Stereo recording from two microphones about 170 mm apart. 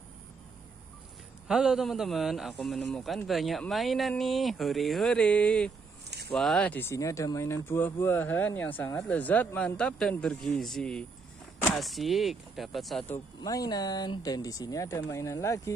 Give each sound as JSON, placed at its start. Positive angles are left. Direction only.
{"t": 1.5, "sound": "a man's voice", "side_deg": -5}
{"t": 13.4, "sound": "speech", "side_deg": 20}